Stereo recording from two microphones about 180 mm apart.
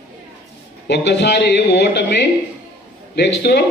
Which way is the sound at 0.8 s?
70° left (ahead or behind).